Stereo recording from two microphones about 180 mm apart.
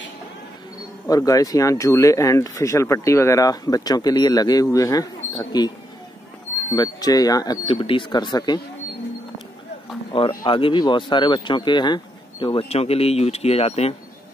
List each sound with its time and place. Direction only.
1.0 s speech: 20° left (ahead or behind)
6.7 s speech: 20° left (ahead or behind)
10.4 s speech: 25° left (ahead or behind)